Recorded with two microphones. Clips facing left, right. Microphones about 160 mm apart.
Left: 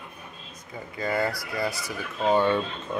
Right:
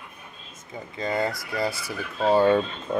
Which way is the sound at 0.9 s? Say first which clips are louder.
Even; 20° right (ahead or behind).